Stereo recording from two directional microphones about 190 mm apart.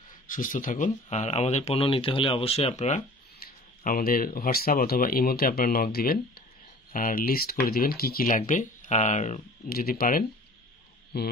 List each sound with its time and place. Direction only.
0.3 s speech: 45° left (ahead or behind)
3.3 s speech: 50° left (ahead or behind)